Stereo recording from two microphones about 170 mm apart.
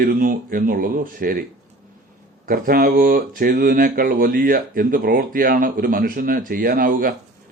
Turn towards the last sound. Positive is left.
turn(degrees=-55)  # may be behind; listen again after turning